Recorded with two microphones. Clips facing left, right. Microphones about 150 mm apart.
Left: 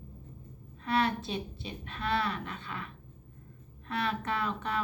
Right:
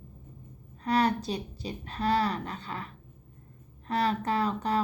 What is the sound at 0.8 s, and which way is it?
A woman's voice, 40° right (ahead or behind).